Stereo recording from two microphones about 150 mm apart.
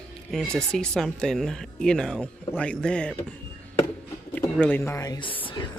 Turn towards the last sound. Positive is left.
turn(degrees=30)  # may be behind; listen again after turning